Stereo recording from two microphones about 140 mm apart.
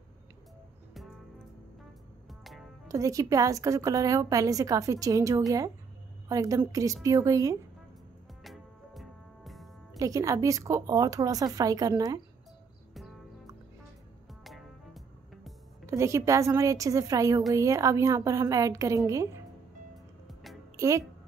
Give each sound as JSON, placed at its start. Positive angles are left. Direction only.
{"t": 2.2, "sound": "music", "side_deg": 0}
{"t": 2.9, "sound": "a woman's voice", "side_deg": -25}
{"t": 8.5, "sound": "music", "side_deg": 0}
{"t": 9.9, "sound": "a woman's voice", "side_deg": -25}
{"t": 14.4, "sound": "music", "side_deg": 0}
{"t": 15.8, "sound": "a woman's voice", "side_deg": -20}
{"t": 20.7, "sound": "speech", "side_deg": -20}